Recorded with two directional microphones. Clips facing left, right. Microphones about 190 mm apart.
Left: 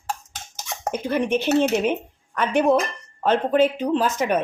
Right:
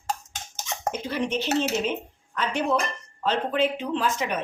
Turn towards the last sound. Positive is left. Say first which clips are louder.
# left 6 dB
turn(degrees=45)  # may be behind; listen again after turning